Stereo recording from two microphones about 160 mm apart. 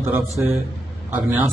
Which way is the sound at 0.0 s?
15° right (ahead or behind).